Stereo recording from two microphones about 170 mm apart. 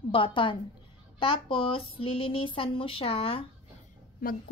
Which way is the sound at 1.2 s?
30° left (ahead or behind).